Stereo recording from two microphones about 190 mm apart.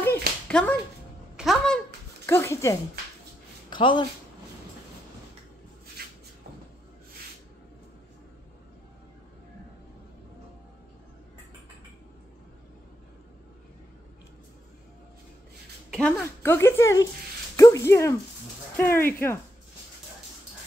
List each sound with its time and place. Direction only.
0.5 s speech: 5° left (ahead or behind)
1.3 s a sound: centre (ahead or behind)
2.2 s speech: 15° left (ahead or behind)
15.9 s speech: 5° left (ahead or behind)